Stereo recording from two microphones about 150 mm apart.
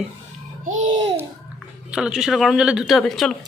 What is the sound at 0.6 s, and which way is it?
Music, 55° right (ahead or behind).